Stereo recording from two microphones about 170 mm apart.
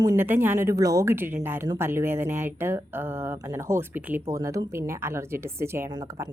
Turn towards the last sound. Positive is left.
turn(degrees=-20)  # may be behind; listen again after turning